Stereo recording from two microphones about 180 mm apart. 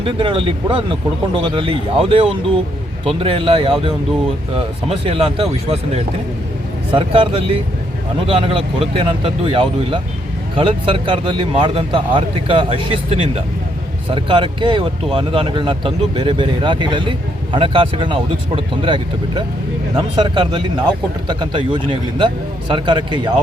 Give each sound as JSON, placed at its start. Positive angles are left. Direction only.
{"t": 0.0, "sound": "speech", "side_deg": -30}
{"t": 6.9, "sound": "speech", "side_deg": -30}